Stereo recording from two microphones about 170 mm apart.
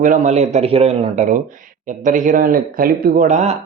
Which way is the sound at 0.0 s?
45° right (ahead or behind).